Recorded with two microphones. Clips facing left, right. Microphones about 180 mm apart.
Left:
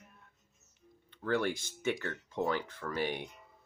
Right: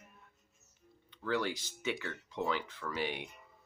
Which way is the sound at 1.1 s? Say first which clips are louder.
Left 3 dB; 55° left (ahead or behind).